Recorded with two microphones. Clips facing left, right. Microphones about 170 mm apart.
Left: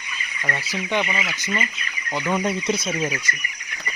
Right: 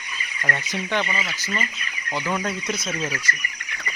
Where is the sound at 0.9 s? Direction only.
10° left (ahead or behind).